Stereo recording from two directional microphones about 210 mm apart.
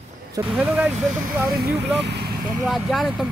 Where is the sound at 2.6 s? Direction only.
Centre (ahead or behind).